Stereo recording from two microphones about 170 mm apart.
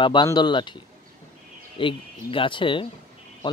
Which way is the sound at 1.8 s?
30° left (ahead or behind).